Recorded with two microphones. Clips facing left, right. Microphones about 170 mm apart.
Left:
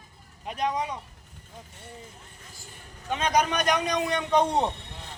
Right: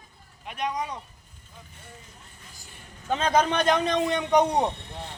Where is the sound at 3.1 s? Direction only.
30° right (ahead or behind).